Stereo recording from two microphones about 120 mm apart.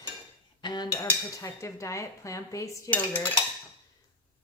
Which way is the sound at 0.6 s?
35° left (ahead or behind).